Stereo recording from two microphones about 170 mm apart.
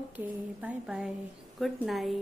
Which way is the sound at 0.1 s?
10° right (ahead or behind).